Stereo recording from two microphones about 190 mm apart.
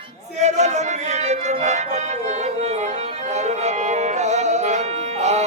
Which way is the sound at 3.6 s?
35° right (ahead or behind).